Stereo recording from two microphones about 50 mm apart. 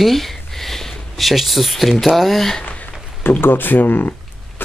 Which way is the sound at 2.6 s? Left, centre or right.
Left.